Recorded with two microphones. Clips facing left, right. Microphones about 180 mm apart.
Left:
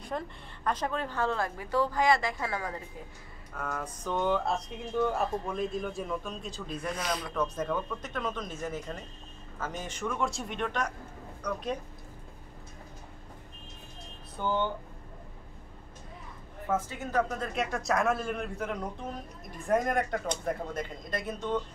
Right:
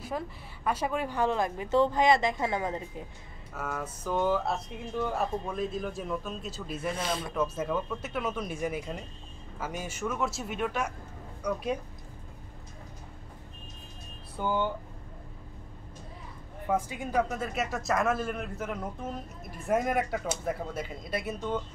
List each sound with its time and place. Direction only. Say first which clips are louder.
0.1 s speech: even; 5° right (ahead or behind); by 2.8 s 20° right (ahead or behind)
3.5 s speech: right 1 dB; 5° right (ahead or behind)
7.0 s speech: right 1 dB; 25° right (ahead or behind)
7.3 s speech: right 1 dB; 5° right (ahead or behind)
14.4 s speech: right 1 dB; 10° right (ahead or behind)
16.6 s speech: right 1 dB; 15° right (ahead or behind)